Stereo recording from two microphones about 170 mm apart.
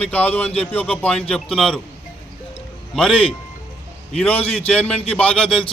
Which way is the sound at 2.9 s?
5° left (ahead or behind).